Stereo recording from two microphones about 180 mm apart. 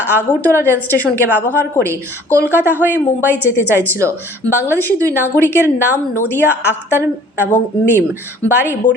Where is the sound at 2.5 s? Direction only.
10° right (ahead or behind).